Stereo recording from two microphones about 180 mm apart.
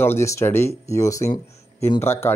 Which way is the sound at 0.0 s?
15° left (ahead or behind).